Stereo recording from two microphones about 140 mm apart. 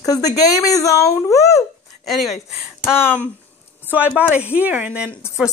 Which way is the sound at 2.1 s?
Centre (ahead or behind).